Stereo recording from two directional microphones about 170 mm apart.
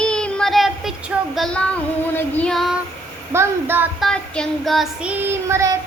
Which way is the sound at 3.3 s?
15° right (ahead or behind).